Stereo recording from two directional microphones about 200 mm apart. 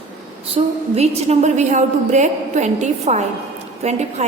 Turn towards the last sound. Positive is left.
turn(degrees=-35)  # may be behind; listen again after turning